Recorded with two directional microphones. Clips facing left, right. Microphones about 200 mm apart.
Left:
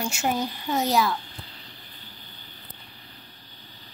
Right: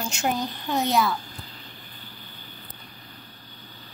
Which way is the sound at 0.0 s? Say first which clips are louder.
Even; 5° left (ahead or behind).